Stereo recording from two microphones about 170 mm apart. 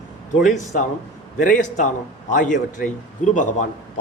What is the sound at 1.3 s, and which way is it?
A man's voice, 50° left (ahead or behind).